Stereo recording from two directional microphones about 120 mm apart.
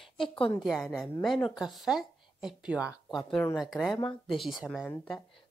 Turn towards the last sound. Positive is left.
turn(degrees=10)  # may be behind; listen again after turning